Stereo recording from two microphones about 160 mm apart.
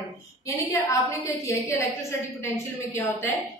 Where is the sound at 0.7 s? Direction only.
20° left (ahead or behind).